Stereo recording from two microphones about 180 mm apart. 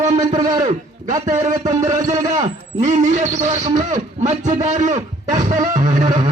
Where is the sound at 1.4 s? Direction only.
20° right (ahead or behind).